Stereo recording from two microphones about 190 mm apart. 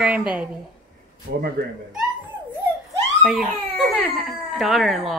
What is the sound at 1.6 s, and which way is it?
Speech, 60° right (ahead or behind).